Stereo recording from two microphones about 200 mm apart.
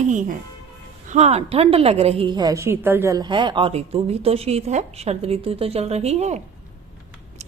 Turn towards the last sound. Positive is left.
turn(degrees=-35)  # may be behind; listen again after turning